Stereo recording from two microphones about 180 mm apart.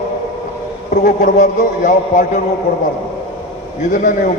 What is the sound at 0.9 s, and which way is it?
A man's voice, 45° left (ahead or behind).